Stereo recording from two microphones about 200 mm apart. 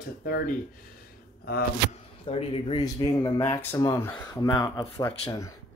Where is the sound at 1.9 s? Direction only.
30° left (ahead or behind).